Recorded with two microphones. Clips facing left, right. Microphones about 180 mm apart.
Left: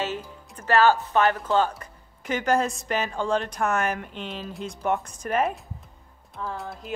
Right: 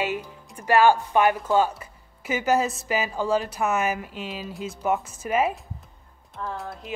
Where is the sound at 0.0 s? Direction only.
10° right (ahead or behind).